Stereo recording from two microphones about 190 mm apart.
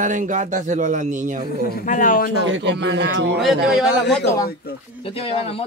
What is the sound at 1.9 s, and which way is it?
Speech, 45° left (ahead or behind).